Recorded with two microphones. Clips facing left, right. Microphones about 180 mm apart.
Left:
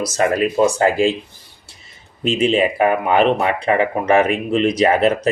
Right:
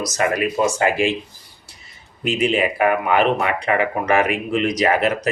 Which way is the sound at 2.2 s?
30° left (ahead or behind).